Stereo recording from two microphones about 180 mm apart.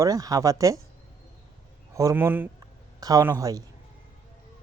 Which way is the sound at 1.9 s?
15° right (ahead or behind).